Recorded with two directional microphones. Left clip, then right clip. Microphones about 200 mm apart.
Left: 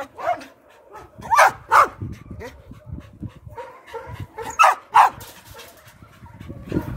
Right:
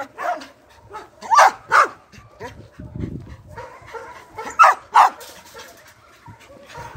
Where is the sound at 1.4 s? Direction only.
30° left (ahead or behind).